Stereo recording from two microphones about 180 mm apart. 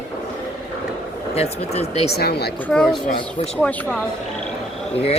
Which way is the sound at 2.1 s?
60° left (ahead or behind).